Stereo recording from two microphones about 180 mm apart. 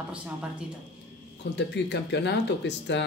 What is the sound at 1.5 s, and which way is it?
Speech, 75° left (ahead or behind).